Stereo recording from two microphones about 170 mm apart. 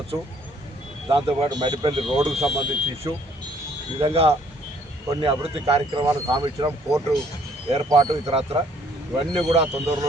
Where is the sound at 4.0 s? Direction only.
35° right (ahead or behind).